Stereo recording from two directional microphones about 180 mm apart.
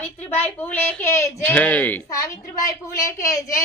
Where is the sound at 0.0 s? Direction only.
10° left (ahead or behind).